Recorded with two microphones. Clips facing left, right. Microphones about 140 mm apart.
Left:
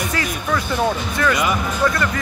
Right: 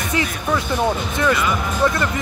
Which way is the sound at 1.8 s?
25° right (ahead or behind).